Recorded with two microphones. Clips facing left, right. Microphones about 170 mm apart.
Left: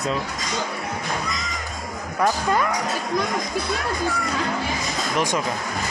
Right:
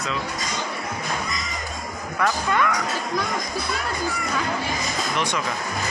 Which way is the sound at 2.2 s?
35° left (ahead or behind).